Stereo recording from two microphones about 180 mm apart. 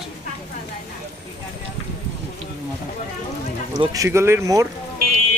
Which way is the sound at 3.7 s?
20° right (ahead or behind).